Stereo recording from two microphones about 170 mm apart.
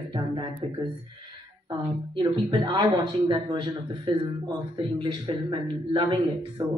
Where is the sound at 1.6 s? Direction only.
30° right (ahead or behind).